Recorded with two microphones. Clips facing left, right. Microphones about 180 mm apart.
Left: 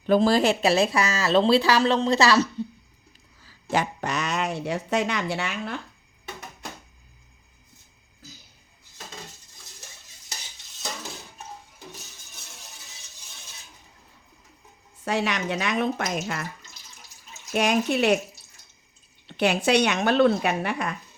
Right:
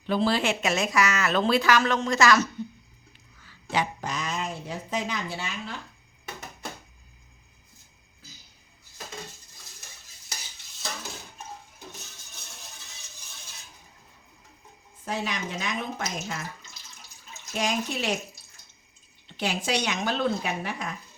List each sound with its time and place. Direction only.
0.0 s speech: 45° left (ahead or behind)
3.4 s a sound: 45° left (ahead or behind)
4.0 s speech: 70° left (ahead or behind)
15.0 s speech: 75° left (ahead or behind)
17.5 s speech: 60° left (ahead or behind)
19.3 s speech: 65° left (ahead or behind)